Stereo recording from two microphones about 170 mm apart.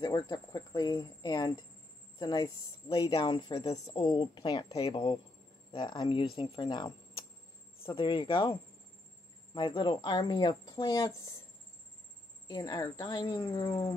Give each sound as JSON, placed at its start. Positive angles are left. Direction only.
{"t": 0.0, "sound": "speech", "side_deg": 25}
{"t": 12.4, "sound": "speech", "side_deg": 25}